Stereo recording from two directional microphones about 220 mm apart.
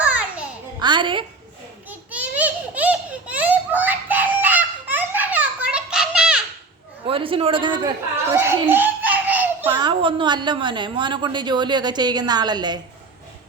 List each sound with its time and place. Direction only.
0.0 s music: 5° right (ahead or behind)
0.8 s a woman's voice: 20° right (ahead or behind)
1.9 s a sound: 5° right (ahead or behind)
7.1 s a woman's voice: 25° right (ahead or behind)
8.2 s a sound: 10° right (ahead or behind)
9.7 s a woman's voice: 20° right (ahead or behind)